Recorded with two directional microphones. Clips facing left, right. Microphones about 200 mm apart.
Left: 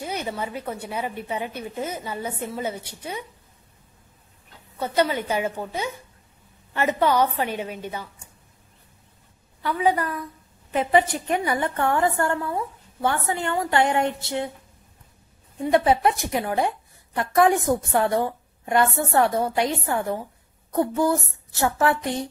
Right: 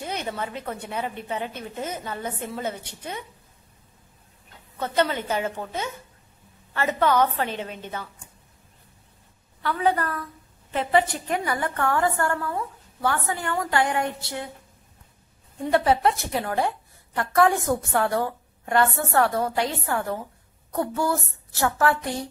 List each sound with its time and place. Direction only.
0.0 s a woman's voice: 10° left (ahead or behind)
4.7 s a woman's voice: 10° left (ahead or behind)
9.6 s a woman's voice: 15° left (ahead or behind)
15.7 s a woman's voice: 15° left (ahead or behind)